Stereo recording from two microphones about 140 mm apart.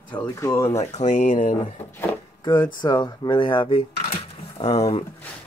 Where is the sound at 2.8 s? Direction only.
30° left (ahead or behind).